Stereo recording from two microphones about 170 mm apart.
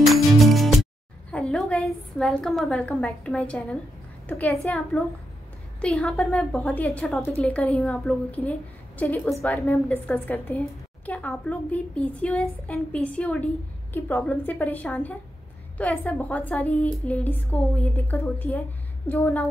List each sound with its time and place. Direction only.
0.0 s music: centre (ahead or behind)
1.3 s a woman's voice: 5° left (ahead or behind)